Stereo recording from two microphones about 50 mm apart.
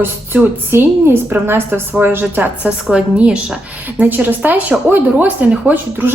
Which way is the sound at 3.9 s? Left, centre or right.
Right.